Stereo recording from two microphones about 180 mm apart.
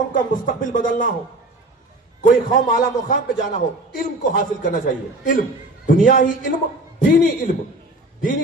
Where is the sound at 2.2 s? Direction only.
45° left (ahead or behind).